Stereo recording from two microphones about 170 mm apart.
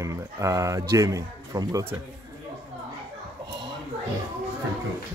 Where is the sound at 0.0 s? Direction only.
20° right (ahead or behind).